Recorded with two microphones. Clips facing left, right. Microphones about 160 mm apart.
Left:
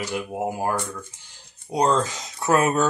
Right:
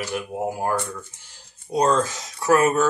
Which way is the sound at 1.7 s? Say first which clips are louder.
Right 1 dB; 20° left (ahead or behind).